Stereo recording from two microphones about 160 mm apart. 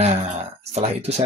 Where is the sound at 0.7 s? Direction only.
40° right (ahead or behind).